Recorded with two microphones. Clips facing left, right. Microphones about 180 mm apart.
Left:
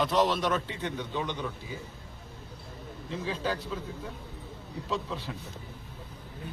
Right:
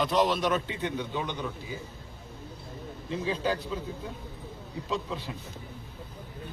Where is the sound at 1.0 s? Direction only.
5° right (ahead or behind).